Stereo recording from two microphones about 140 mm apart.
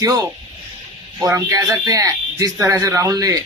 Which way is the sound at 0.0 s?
25° right (ahead or behind).